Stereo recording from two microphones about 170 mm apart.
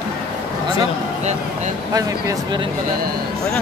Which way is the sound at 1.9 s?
20° right (ahead or behind).